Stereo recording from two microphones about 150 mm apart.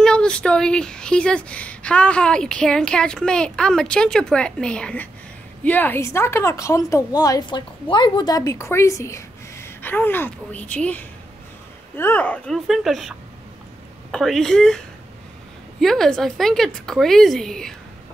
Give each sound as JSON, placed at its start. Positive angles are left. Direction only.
{"t": 0.0, "sound": "a woman's voice", "side_deg": 5}
{"t": 14.1, "sound": "speech", "side_deg": 0}
{"t": 15.8, "sound": "speech", "side_deg": 0}